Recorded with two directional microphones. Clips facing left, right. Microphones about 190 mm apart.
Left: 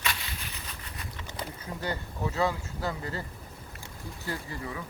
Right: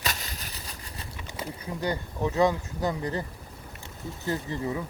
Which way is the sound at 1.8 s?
15° right (ahead or behind).